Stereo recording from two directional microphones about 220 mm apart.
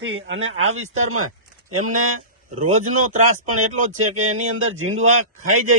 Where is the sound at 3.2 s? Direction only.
80° right.